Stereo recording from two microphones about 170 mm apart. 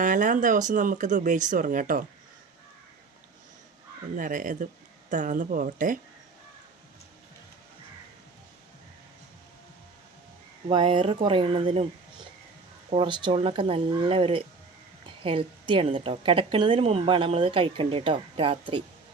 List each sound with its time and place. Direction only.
0.0 s speech: 50° right (ahead or behind)
4.1 s speech: 50° right (ahead or behind)
10.7 s a woman's voice: 30° right (ahead or behind)
12.9 s a woman's voice: 30° right (ahead or behind)